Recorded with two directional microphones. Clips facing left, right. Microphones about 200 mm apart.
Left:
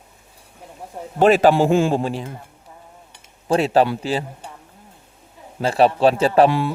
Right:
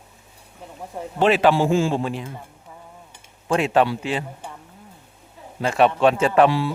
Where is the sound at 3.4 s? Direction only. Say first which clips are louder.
Left 2 dB; 35° left (ahead or behind).